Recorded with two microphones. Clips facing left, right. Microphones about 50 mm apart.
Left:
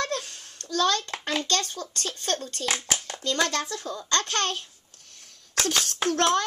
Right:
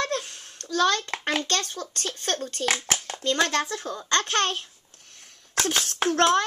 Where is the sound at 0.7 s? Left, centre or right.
Right.